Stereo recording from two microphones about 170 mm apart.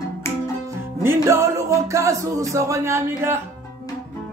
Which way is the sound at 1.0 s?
15° right (ahead or behind).